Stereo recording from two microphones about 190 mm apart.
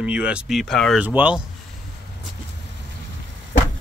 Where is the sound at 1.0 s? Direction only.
5° right (ahead or behind).